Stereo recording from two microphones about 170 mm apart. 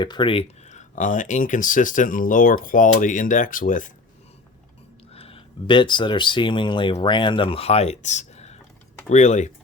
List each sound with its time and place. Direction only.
0.0 s speech: 25° left (ahead or behind); by 3.9 s 50° left (ahead or behind)
5.1 s speech: 35° left (ahead or behind)